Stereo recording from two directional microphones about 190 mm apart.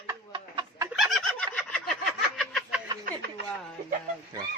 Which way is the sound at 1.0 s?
Centre (ahead or behind).